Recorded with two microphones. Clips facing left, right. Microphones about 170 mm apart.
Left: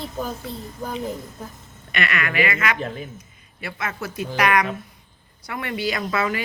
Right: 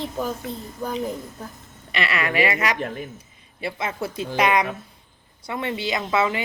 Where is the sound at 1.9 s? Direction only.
30° right (ahead or behind).